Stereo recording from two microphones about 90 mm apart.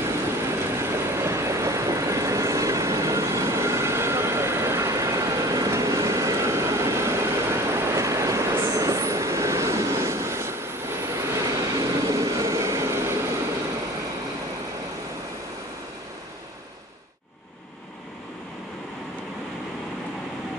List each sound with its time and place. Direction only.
0.0 s train: 30° right (ahead or behind)
12.1 s vehicle: 40° right (ahead or behind)